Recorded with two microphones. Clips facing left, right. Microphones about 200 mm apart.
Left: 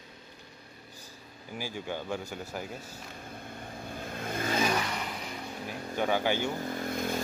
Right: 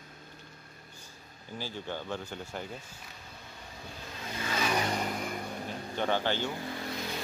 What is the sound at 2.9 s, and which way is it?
Vehicle, 55° left (ahead or behind).